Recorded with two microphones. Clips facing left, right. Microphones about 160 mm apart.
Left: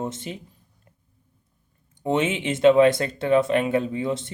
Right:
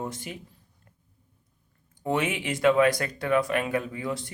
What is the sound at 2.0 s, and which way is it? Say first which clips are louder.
Speech: left 4 dB; 25° left (ahead or behind).